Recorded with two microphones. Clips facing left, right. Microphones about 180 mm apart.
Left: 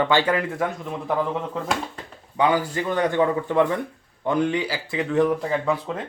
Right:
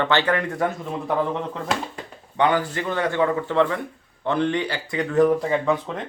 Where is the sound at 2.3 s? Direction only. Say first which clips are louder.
Even; 10° left (ahead or behind).